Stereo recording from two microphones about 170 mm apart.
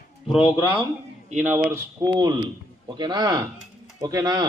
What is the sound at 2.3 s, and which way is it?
Speech, 30° right (ahead or behind).